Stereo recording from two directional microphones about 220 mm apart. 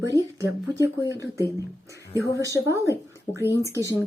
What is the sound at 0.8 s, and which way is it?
Speech, 15° right (ahead or behind).